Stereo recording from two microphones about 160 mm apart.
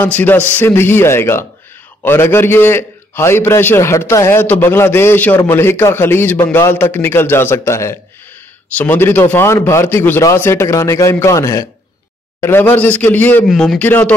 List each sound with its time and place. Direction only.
0.0 s a man's voice: 10° left (ahead or behind)